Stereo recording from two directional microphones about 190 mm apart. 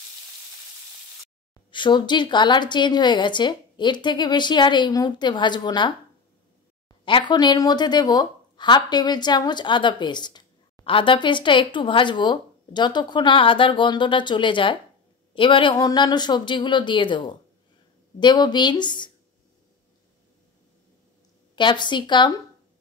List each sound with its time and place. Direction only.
1.5 s a woman's voice: 25° left (ahead or behind)
7.1 s a woman's voice: 25° left (ahead or behind)
21.5 s a woman's voice: 25° left (ahead or behind)